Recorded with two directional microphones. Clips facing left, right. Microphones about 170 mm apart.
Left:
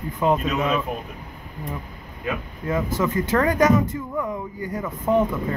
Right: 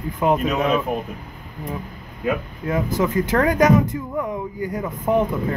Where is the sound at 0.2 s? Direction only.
15° right (ahead or behind).